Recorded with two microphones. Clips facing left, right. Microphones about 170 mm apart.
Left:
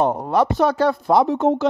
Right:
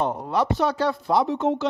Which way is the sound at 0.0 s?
50° left (ahead or behind).